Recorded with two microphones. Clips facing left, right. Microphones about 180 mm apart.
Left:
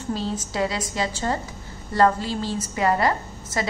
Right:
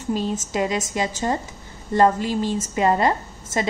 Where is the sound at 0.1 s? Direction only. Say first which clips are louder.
Right 4 dB; 15° right (ahead or behind).